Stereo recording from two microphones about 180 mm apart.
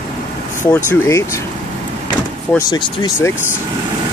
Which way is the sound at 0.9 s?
15° left (ahead or behind).